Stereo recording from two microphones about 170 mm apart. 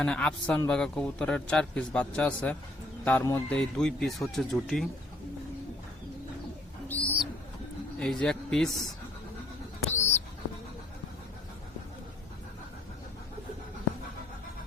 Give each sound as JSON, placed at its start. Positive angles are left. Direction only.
{"t": 0.0, "sound": "a man's voice", "side_deg": 5}
{"t": 6.8, "sound": "bird", "side_deg": 10}
{"t": 7.9, "sound": "a man's voice", "side_deg": 5}
{"t": 9.8, "sound": "bird", "side_deg": 40}